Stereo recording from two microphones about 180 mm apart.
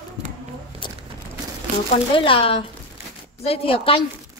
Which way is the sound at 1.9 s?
30° left (ahead or behind).